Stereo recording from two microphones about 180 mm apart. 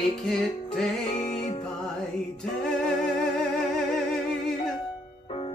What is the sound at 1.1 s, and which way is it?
Music, 40° left (ahead or behind).